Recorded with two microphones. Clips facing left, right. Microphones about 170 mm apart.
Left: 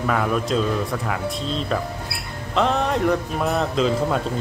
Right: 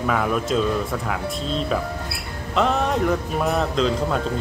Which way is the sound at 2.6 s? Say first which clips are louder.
Even; centre (ahead or behind).